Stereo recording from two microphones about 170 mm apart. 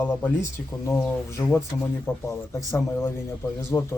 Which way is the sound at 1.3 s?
15° left (ahead or behind).